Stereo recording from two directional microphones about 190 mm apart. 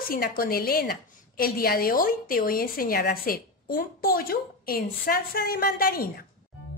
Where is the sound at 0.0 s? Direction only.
50° left (ahead or behind).